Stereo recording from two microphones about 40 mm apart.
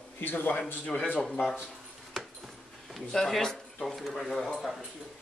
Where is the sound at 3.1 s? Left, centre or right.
Centre.